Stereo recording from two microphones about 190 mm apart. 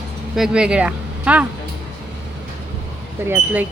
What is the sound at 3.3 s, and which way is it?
Speech, 10° right (ahead or behind).